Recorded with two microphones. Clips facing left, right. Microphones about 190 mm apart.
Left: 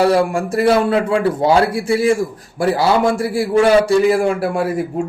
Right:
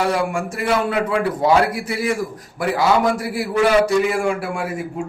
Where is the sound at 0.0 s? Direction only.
35° left (ahead or behind).